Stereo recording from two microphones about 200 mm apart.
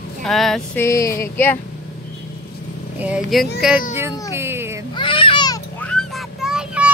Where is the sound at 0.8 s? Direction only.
15° left (ahead or behind).